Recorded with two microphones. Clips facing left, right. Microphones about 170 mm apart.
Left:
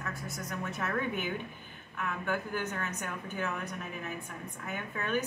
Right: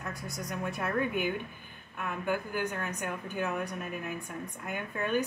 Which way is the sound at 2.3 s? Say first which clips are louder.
Right 3 dB; 10° right (ahead or behind).